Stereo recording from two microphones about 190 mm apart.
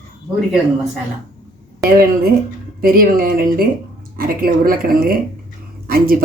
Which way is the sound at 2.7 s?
50° right (ahead or behind).